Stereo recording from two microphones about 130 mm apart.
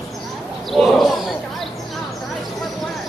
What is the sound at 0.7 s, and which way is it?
Roaring cats, centre (ahead or behind).